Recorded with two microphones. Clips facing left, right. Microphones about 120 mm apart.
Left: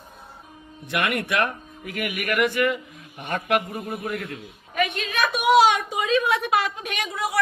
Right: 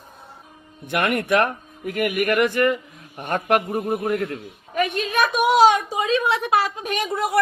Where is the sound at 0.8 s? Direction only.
45° right (ahead or behind).